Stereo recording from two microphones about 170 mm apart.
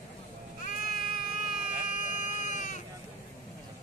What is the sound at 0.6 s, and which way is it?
Baby cry, 55° left (ahead or behind).